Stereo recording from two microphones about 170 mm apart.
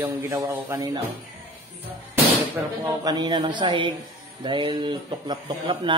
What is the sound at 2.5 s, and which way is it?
Speech, 20° right (ahead or behind).